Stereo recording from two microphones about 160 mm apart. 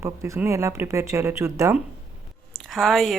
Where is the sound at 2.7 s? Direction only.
Centre (ahead or behind).